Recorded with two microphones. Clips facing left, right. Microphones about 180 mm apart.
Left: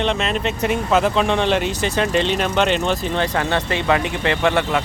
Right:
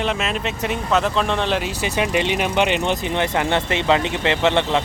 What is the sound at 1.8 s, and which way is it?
Speech, 15° right (ahead or behind).